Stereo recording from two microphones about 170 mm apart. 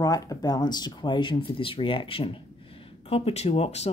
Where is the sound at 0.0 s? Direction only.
20° left (ahead or behind).